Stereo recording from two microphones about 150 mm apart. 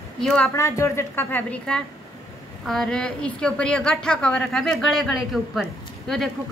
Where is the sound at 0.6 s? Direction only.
20° left (ahead or behind).